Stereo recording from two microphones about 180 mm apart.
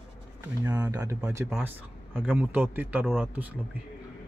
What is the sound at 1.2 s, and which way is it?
A man's voice, 10° right (ahead or behind).